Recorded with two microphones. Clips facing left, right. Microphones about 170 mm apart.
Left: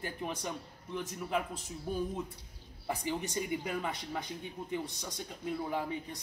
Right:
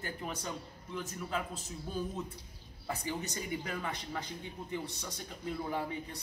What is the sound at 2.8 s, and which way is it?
A man's voice, 15° left (ahead or behind).